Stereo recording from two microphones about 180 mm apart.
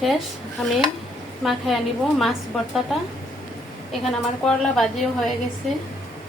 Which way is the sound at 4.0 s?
Centre (ahead or behind).